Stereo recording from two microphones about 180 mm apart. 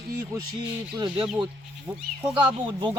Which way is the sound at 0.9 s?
25° right (ahead or behind).